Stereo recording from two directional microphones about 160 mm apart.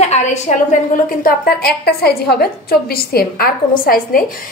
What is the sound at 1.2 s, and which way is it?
A woman's voice, 75° left (ahead or behind).